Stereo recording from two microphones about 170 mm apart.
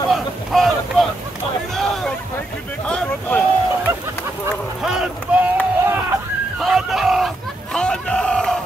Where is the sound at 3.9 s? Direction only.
15° right (ahead or behind).